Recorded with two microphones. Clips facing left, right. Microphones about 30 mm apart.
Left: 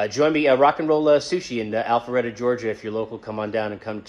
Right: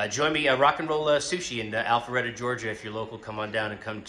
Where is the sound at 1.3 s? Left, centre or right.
Left.